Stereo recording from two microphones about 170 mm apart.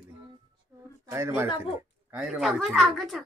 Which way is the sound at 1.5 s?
35° left (ahead or behind).